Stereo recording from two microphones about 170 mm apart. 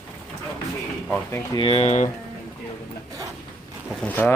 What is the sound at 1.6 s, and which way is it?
Speech, 35° left (ahead or behind).